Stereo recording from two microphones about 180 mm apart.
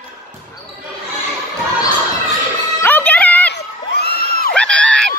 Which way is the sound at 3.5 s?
65° left (ahead or behind).